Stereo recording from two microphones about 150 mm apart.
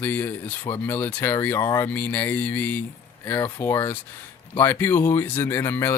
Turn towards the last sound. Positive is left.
turn(degrees=15)  # may be behind; listen again after turning